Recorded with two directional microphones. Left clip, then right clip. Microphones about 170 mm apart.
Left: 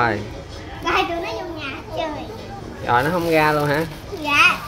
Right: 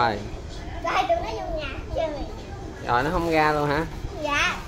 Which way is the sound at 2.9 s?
Centre (ahead or behind).